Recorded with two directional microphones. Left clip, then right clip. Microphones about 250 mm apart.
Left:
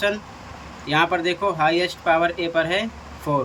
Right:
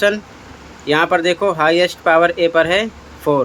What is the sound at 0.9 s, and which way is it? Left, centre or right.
Speech, centre.